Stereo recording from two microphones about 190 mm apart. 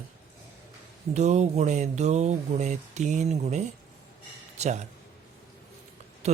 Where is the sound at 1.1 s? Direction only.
35° right (ahead or behind).